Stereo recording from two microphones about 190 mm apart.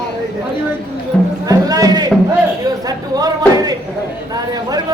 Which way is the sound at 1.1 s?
5° left (ahead or behind).